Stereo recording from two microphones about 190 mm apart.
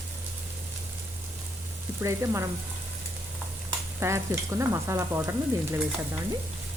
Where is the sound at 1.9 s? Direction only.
15° right (ahead or behind).